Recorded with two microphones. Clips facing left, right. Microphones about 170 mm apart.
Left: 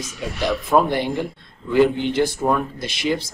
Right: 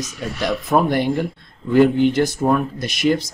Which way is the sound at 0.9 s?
50° right (ahead or behind).